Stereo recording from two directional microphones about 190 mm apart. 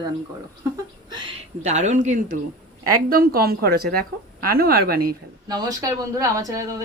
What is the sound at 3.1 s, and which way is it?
A woman's voice, 50° right (ahead or behind).